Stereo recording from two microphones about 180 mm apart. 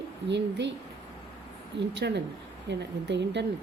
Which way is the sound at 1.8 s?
70° right (ahead or behind).